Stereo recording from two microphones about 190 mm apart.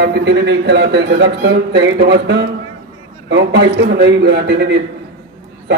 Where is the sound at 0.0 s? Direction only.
65° right (ahead or behind).